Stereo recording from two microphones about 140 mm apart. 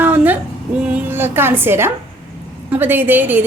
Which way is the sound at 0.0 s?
10° right (ahead or behind).